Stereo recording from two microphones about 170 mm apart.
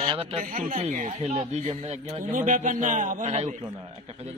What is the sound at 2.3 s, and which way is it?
Speech, 50° right (ahead or behind).